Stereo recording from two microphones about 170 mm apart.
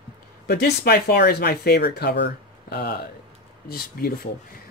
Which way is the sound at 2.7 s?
65° left (ahead or behind).